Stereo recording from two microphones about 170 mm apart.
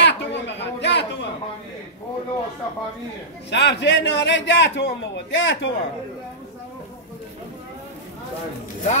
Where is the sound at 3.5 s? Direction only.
90° left.